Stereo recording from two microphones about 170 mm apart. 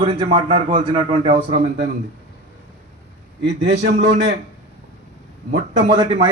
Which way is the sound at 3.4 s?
90° right.